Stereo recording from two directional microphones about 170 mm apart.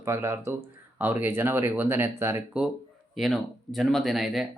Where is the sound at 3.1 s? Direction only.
Centre (ahead or behind).